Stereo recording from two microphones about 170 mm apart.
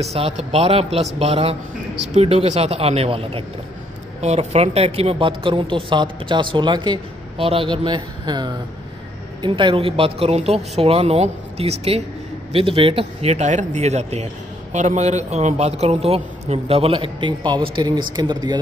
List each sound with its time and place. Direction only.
0.0 s a man's voice: 40° right (ahead or behind)